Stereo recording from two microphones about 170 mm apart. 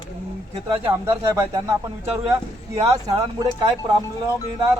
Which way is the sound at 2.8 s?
20° right (ahead or behind).